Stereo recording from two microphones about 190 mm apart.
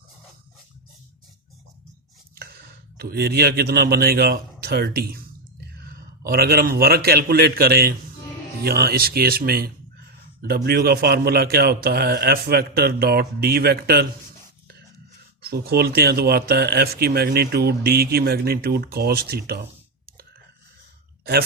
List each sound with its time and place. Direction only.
2.3 s a sound: 55° right (ahead or behind)
3.0 s a man's voice: 55° right (ahead or behind)
15.4 s speech: 55° right (ahead or behind)